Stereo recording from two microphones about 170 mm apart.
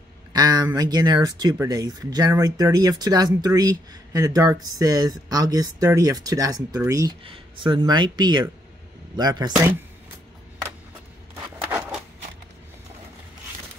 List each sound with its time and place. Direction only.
0.3 s speech: 25° right (ahead or behind)